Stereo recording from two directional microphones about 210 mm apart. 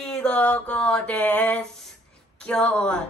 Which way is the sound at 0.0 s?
5° left (ahead or behind).